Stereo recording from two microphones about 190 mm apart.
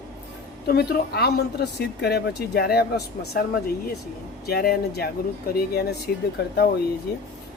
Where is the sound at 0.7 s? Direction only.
55° left (ahead or behind).